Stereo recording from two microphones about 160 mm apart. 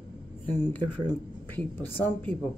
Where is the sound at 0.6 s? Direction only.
10° left (ahead or behind).